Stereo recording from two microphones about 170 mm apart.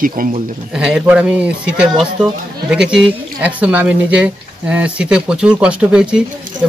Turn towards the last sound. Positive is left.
turn(degrees=-5)  # may be behind; listen again after turning